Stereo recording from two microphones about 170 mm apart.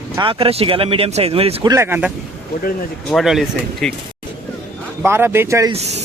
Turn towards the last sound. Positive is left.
turn(degrees=-40)  # may be behind; listen again after turning